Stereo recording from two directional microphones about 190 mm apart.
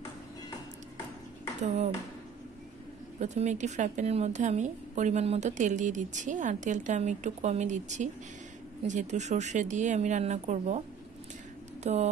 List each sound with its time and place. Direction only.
1.6 s a woman's voice: 40° right (ahead or behind)
3.2 s a woman's voice: 40° right (ahead or behind)
11.8 s speech: 35° right (ahead or behind)